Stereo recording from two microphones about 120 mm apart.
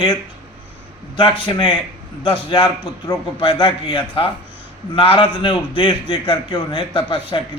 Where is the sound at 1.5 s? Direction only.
40° left (ahead or behind).